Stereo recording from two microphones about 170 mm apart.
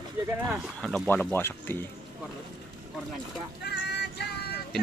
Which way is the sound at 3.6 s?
80° left.